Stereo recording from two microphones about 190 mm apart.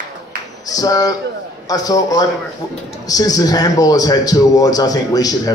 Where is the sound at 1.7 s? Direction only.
20° left (ahead or behind).